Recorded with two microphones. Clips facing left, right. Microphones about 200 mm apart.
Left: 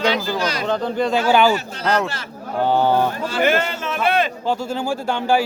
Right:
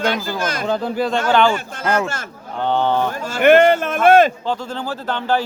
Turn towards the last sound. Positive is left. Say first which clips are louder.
# left 2 dB
turn(degrees=10)  # may be behind; listen again after turning